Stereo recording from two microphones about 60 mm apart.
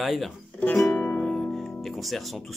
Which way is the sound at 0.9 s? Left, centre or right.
Left.